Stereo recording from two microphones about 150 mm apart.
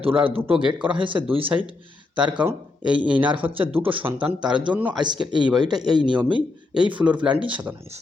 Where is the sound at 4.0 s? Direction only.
10° right (ahead or behind).